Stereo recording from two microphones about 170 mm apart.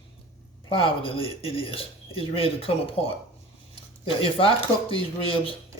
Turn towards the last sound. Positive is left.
turn(degrees=30)  # may be behind; listen again after turning